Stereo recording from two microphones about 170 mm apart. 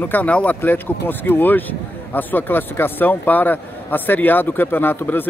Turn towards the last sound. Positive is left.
turn(degrees=10)  # may be behind; listen again after turning